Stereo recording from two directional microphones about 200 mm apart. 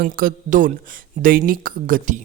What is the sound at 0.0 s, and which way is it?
Speech, 45° right (ahead or behind).